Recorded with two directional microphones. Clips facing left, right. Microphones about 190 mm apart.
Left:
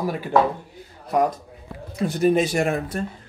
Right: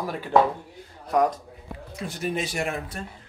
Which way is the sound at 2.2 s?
45° left (ahead or behind).